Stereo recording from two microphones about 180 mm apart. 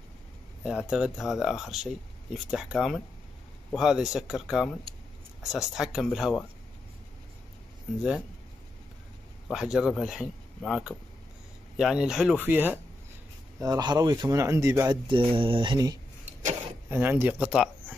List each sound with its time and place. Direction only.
0.7 s speech: 5° right (ahead or behind)
9.5 s speech: 5° right (ahead or behind)
13.6 s speech: 20° right (ahead or behind)
15.3 s speech: 30° right (ahead or behind)
16.9 s speech: 10° right (ahead or behind)